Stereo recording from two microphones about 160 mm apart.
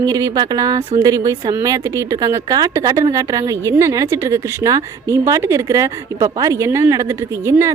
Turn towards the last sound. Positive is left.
turn(degrees=-15)  # may be behind; listen again after turning